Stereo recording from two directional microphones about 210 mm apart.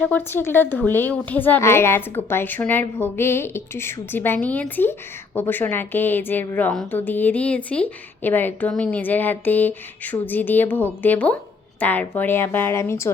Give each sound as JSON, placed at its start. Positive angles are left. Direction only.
{"t": 0.0, "sound": "a woman's voice", "side_deg": 10}